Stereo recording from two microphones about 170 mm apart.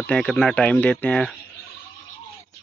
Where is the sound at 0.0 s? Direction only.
5° left (ahead or behind).